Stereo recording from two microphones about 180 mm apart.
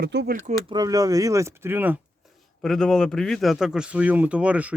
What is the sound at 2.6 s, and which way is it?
Speech, centre (ahead or behind).